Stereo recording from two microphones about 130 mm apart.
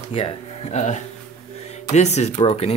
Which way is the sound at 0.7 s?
65° left (ahead or behind).